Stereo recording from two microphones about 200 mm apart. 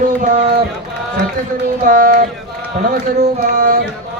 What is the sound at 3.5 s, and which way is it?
Speech, 45° right (ahead or behind).